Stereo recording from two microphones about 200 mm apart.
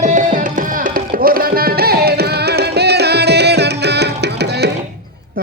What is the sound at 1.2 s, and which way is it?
Music, 45° right (ahead or behind).